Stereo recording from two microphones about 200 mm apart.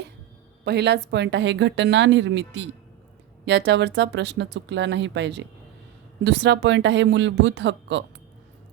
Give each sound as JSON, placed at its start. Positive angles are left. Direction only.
{"t": 0.6, "sound": "a woman's voice", "side_deg": -55}